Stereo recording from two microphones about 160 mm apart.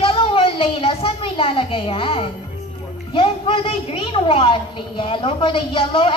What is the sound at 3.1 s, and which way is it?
A woman's voice, 35° left (ahead or behind).